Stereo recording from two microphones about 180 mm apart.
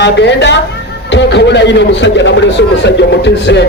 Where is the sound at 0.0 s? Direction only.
75° left (ahead or behind).